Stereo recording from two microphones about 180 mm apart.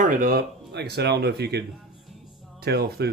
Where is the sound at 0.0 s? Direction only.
50° right (ahead or behind).